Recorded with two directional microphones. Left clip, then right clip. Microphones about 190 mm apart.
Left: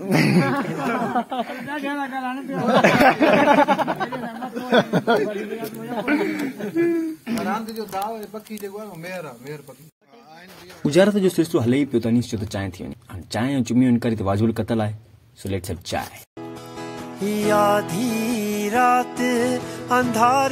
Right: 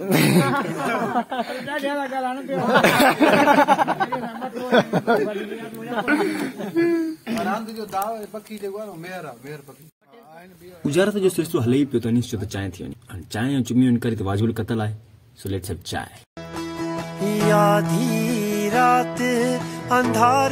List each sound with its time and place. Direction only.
0.0 s speech: 20° right (ahead or behind)
4.6 s speech: centre (ahead or behind)
6.0 s speech: 15° right (ahead or behind)
7.4 s speech: 10° right (ahead or behind)
10.9 s a man's voice: 25° left (ahead or behind)
17.2 s music: centre (ahead or behind)